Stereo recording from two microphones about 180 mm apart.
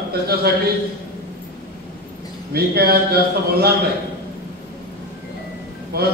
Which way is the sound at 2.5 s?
60° right (ahead or behind).